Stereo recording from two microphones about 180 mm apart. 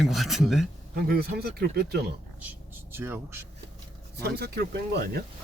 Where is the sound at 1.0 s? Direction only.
60° right (ahead or behind).